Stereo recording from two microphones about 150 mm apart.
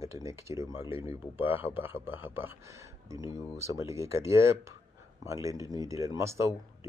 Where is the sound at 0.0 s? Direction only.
20° right (ahead or behind).